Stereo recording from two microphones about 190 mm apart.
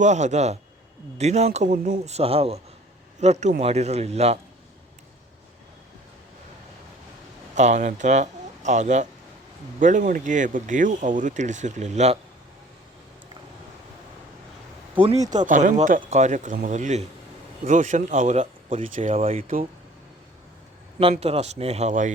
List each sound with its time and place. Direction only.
0.0 s speech: 40° right (ahead or behind)
7.5 s speech: 40° right (ahead or behind)
15.3 s speech: 40° right (ahead or behind)
19.4 s speech: 45° right (ahead or behind)
21.0 s speech: 30° right (ahead or behind)